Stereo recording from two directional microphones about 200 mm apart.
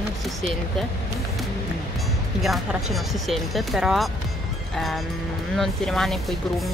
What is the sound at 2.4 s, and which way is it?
Speech, centre (ahead or behind).